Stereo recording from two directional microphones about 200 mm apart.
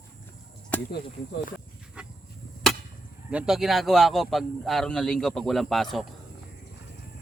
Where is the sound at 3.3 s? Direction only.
5° right (ahead or behind).